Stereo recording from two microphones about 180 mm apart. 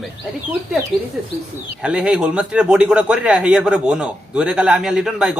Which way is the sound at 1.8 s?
5° right (ahead or behind).